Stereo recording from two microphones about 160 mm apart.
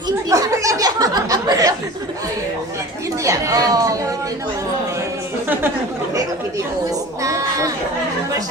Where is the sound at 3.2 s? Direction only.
20° right (ahead or behind).